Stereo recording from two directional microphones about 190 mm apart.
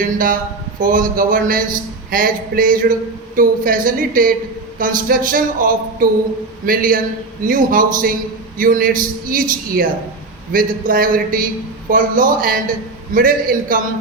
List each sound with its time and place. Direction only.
0.0 s a man's voice: 45° right (ahead or behind)